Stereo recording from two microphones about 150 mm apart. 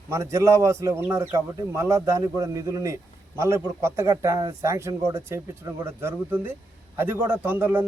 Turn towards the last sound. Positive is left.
turn(degrees=-15)  # may be behind; listen again after turning